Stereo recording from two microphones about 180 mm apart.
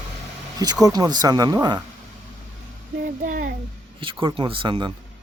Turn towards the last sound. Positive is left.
turn(degrees=-25)  # may be behind; listen again after turning